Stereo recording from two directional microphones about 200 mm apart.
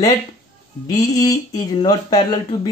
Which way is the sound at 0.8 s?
20° left (ahead or behind).